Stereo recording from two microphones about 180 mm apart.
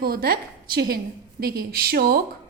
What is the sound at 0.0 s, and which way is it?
A woman's voice, 55° right (ahead or behind).